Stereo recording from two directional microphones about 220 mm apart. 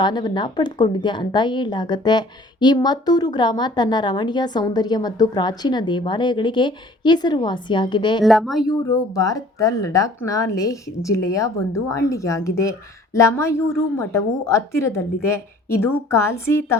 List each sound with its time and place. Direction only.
0.0 s speech: 20° left (ahead or behind)
8.2 s speech: centre (ahead or behind)
8.9 s speech: 15° left (ahead or behind)